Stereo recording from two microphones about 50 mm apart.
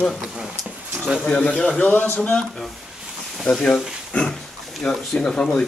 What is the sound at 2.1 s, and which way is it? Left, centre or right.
Speech, left.